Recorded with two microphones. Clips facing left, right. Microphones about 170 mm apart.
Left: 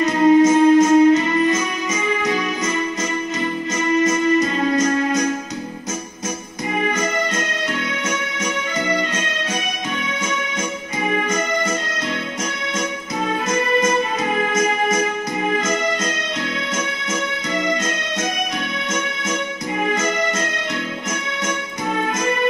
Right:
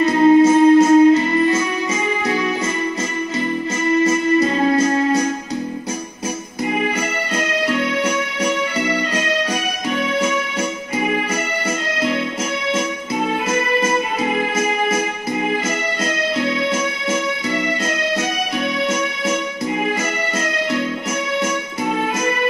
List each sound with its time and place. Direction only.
0.0 s music: 30° right (ahead or behind)
4.0 s music: 30° right (ahead or behind)
7.3 s keyboard: 35° right (ahead or behind)
13.5 s music: 30° right (ahead or behind)